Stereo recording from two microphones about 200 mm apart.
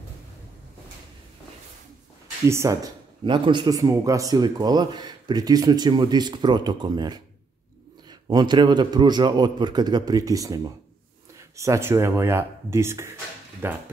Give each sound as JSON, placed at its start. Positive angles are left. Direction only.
{"t": 2.4, "sound": "a man's voice", "side_deg": -15}